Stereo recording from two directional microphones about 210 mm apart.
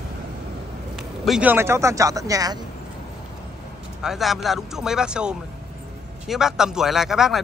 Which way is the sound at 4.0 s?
Centre (ahead or behind).